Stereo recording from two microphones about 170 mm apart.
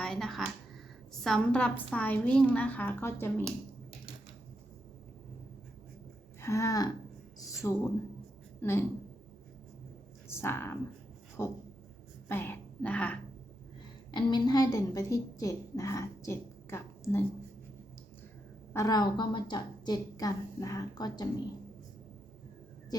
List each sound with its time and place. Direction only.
0.0 s a sound: 5° left (ahead or behind)
1.1 s a woman's voice: centre (ahead or behind)
6.4 s a woman's voice: 15° left (ahead or behind)
10.2 s a woman's voice: 15° left (ahead or behind)
14.1 s a woman's voice: 25° left (ahead or behind)
18.7 s a woman's voice: 20° left (ahead or behind)